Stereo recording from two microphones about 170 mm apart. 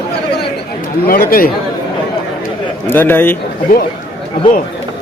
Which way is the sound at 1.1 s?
60° left (ahead or behind).